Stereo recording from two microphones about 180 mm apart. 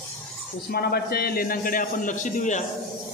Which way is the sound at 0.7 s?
60° left (ahead or behind).